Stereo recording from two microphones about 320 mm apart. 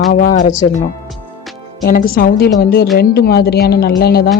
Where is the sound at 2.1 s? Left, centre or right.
Left.